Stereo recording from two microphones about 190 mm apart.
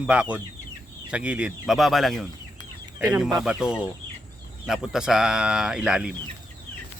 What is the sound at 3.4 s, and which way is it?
Speech, 5° right (ahead or behind).